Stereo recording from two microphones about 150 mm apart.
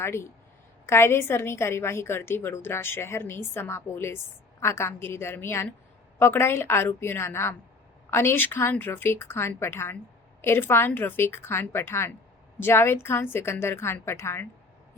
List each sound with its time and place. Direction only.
0.0 s a woman's voice: 20° left (ahead or behind)